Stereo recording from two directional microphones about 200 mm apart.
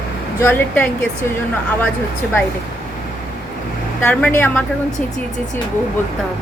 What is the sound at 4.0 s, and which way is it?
Speech, 5° left (ahead or behind).